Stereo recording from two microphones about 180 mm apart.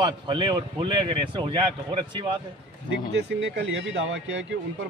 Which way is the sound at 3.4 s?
90° right.